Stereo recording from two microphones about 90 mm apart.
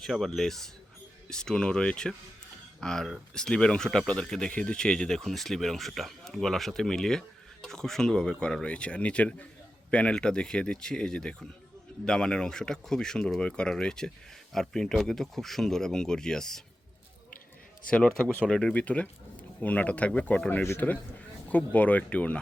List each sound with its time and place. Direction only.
0.0 s speech: 5° left (ahead or behind)
17.8 s speech: 10° left (ahead or behind)